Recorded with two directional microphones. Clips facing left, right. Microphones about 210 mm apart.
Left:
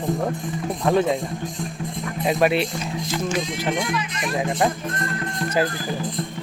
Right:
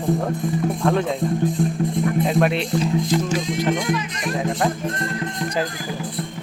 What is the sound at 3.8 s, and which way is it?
Speech, 40° right (ahead or behind).